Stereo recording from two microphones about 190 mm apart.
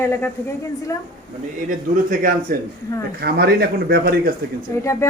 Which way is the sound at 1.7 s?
45° right (ahead or behind).